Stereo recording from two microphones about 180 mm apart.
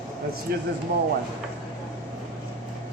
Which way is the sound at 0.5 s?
60° right (ahead or behind).